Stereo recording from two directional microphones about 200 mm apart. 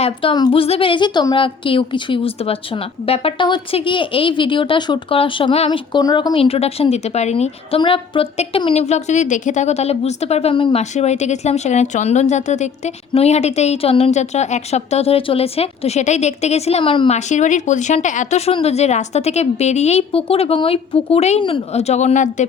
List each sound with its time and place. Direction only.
0.0 s a woman's voice: 25° left (ahead or behind)